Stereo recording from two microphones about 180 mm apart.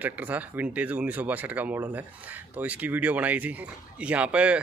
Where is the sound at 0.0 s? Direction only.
10° right (ahead or behind).